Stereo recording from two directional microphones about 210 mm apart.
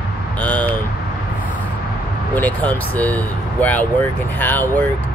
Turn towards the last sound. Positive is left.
turn(degrees=10)  # may be behind; listen again after turning